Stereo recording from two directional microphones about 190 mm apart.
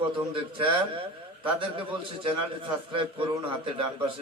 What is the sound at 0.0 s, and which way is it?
A man's voice, 30° right (ahead or behind).